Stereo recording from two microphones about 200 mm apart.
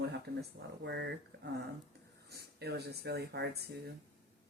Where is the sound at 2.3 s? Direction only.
55° right (ahead or behind).